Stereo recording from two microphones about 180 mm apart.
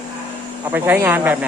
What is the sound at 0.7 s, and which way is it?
Speech, 10° right (ahead or behind).